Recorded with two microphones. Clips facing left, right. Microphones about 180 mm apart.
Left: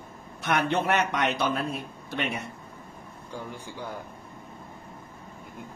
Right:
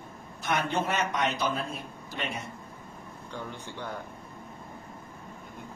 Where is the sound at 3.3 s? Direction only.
10° left (ahead or behind).